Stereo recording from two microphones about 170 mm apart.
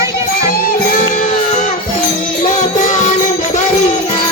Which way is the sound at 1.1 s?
50° left (ahead or behind).